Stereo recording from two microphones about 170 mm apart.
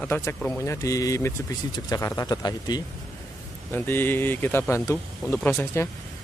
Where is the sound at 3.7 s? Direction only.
10° left (ahead or behind).